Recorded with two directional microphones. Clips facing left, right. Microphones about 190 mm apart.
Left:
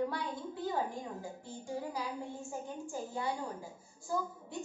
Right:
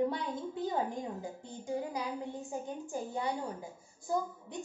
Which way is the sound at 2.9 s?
20° right (ahead or behind).